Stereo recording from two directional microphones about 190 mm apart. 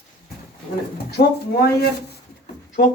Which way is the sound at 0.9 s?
60° left (ahead or behind).